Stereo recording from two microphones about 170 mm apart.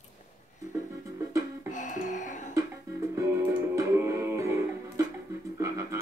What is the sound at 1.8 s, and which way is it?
Music, 45° left (ahead or behind).